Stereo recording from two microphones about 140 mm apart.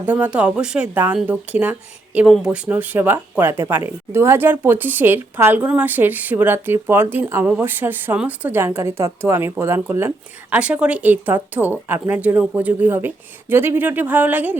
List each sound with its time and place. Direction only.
0.0 s speech: 10° right (ahead or behind)